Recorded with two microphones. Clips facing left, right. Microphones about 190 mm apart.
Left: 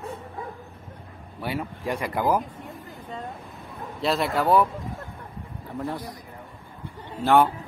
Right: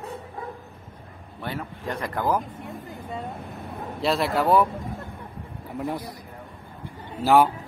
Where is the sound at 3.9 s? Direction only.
Centre (ahead or behind).